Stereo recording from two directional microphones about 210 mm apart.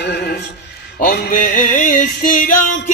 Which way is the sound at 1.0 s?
40° left (ahead or behind).